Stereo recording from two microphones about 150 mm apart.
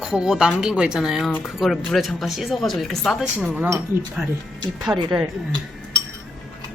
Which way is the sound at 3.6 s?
15° right (ahead or behind).